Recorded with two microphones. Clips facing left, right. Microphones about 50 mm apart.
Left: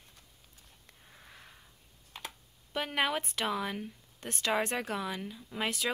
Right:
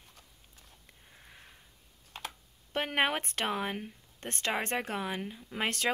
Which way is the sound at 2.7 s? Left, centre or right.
Right.